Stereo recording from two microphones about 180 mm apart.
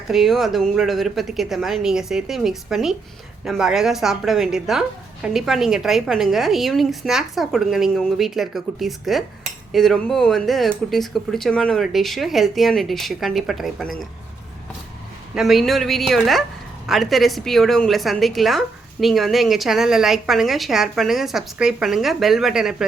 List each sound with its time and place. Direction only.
0.1 s a woman's voice: centre (ahead or behind)
15.4 s a woman's voice: centre (ahead or behind)